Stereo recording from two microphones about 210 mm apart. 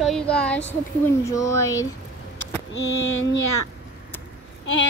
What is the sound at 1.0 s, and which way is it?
Speech, 15° left (ahead or behind).